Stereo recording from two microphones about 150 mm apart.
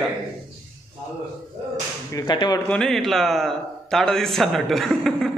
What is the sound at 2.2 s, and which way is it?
Speech, 30° left (ahead or behind).